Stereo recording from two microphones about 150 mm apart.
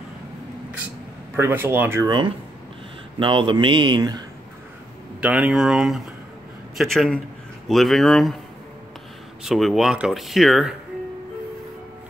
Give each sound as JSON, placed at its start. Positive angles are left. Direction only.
{"t": 1.3, "sound": "speech", "side_deg": -15}
{"t": 2.0, "sound": "speech", "side_deg": -30}
{"t": 5.2, "sound": "speech", "side_deg": -10}
{"t": 9.4, "sound": "speech", "side_deg": 0}